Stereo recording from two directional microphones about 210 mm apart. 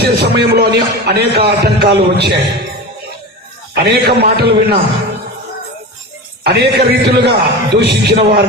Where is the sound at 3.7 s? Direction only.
50° right (ahead or behind).